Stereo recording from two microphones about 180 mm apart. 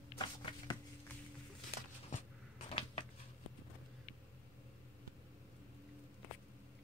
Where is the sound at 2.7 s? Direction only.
30° left (ahead or behind).